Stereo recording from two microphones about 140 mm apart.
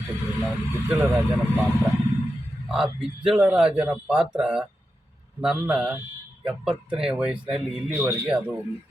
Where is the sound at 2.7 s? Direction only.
5° right (ahead or behind).